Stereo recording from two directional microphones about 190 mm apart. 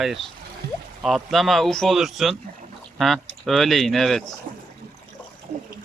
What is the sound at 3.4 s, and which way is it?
Speech, centre (ahead or behind).